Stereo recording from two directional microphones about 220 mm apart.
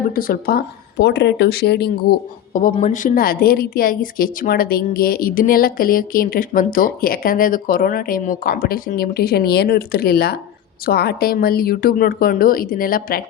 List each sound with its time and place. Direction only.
0.1 s speech: 40° left (ahead or behind)